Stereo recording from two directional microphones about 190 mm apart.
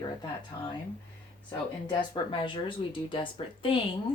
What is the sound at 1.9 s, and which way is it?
Speech, 25° left (ahead or behind).